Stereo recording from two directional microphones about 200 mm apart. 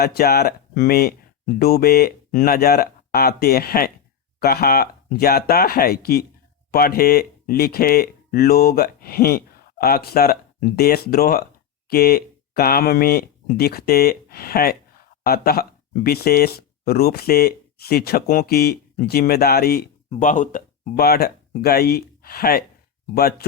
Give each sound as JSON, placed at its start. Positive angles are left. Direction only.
{"t": 0.0, "sound": "speech", "side_deg": 50}
{"t": 20.1, "sound": "speech", "side_deg": 40}